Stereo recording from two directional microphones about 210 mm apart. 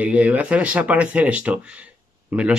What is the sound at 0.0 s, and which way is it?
Speech, 5° right (ahead or behind).